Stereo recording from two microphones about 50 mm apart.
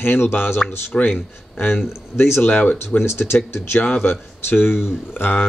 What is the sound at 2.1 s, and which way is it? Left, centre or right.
Speech, left.